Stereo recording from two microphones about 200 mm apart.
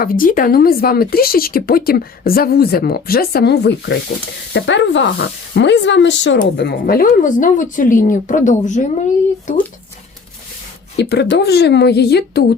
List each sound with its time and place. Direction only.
0.0 s a woman's voice: 45° left (ahead or behind)
10.9 s speech: 60° left (ahead or behind)